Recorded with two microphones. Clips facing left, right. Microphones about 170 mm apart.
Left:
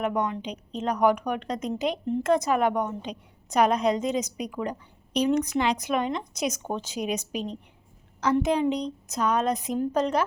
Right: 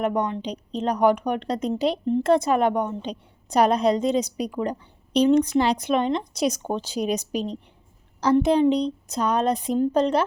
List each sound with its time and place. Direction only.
0.0 s speech: 35° right (ahead or behind)